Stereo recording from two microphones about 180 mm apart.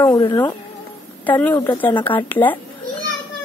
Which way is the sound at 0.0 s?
20° left (ahead or behind).